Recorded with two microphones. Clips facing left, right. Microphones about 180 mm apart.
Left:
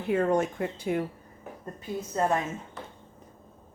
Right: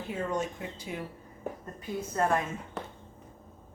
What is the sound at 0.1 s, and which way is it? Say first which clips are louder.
Speech: left 8 dB; 60° left (ahead or behind).